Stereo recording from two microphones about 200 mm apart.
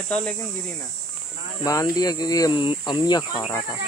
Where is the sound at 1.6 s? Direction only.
15° left (ahead or behind).